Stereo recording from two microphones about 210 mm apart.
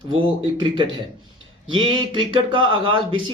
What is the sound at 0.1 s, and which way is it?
Speech, 20° right (ahead or behind).